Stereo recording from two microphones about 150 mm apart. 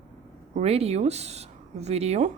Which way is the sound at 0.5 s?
45° right (ahead or behind).